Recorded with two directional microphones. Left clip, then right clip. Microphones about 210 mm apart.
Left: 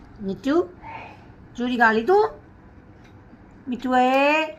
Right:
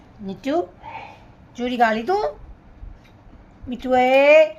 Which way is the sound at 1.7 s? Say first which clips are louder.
Left 2 dB; 20° right (ahead or behind).